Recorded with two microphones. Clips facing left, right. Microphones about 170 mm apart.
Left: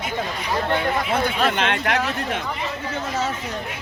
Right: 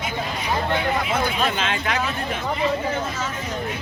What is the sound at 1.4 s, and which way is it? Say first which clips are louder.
Speech: left 2 dB; 65° left (ahead or behind).